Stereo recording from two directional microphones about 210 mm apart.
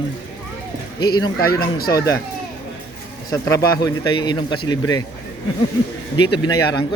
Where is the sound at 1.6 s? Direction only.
45° left (ahead or behind).